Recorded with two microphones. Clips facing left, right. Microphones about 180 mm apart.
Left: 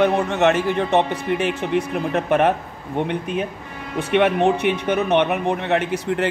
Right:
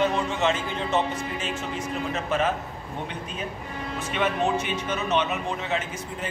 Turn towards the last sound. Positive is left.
turn(degrees=75)  # may be behind; listen again after turning